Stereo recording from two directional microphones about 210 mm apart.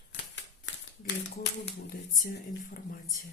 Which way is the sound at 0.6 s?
55° left (ahead or behind).